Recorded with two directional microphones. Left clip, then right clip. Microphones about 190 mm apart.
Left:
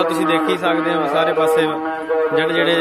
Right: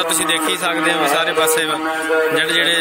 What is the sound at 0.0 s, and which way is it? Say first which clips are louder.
A man's voice: left 1 dB; centre (ahead or behind).